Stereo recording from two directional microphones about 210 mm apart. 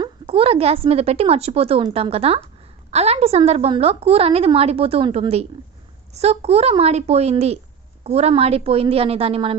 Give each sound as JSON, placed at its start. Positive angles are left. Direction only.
{"t": 0.0, "sound": "a woman's voice", "side_deg": -25}